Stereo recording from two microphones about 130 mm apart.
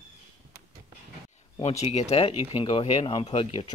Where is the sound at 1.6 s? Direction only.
55° left (ahead or behind).